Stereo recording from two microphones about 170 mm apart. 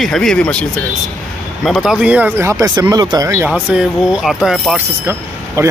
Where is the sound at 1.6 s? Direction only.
Centre (ahead or behind).